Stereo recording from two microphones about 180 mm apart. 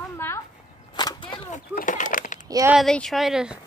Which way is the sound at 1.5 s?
45° left (ahead or behind).